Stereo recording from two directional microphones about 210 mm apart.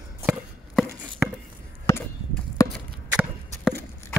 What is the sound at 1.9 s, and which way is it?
Chop, 15° left (ahead or behind).